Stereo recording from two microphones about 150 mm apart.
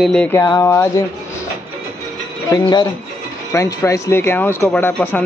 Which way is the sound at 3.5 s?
20° left (ahead or behind).